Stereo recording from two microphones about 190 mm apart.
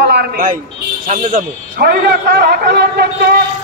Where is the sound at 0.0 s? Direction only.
55° right (ahead or behind).